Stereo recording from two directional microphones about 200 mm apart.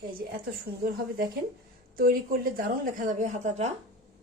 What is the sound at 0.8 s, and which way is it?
A woman's voice, 50° right (ahead or behind).